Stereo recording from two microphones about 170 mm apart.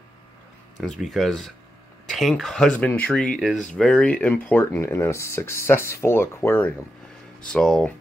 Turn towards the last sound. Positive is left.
turn(degrees=5)  # may be behind; listen again after turning